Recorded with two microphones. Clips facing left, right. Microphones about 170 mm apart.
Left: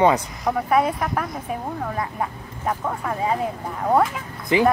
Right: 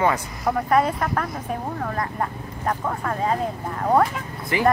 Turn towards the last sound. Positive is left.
turn(degrees=20)  # may be behind; listen again after turning